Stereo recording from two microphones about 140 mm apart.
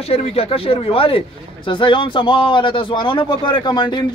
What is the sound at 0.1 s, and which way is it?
A man's voice, 45° left (ahead or behind).